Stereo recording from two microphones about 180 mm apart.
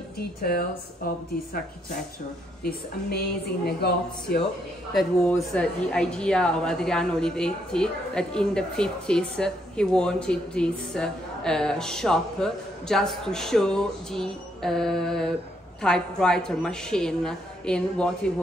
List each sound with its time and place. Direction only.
0.2 s a woman's voice: 55° left (ahead or behind)
2.6 s speech: 60° left (ahead or behind)
5.3 s a woman's voice: 5° left (ahead or behind)